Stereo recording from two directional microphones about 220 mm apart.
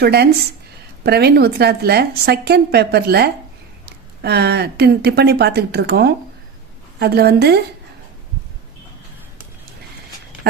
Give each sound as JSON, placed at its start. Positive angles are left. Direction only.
{"t": 0.0, "sound": "speech", "side_deg": -45}